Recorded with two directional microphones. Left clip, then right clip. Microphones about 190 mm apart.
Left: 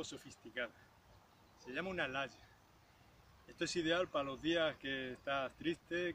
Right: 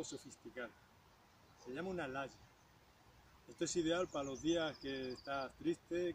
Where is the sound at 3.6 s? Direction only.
Centre (ahead or behind).